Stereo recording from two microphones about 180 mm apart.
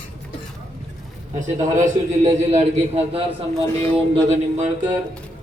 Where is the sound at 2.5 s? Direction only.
35° right (ahead or behind).